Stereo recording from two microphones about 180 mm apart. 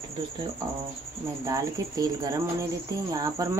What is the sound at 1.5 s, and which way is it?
Speech, 20° right (ahead or behind).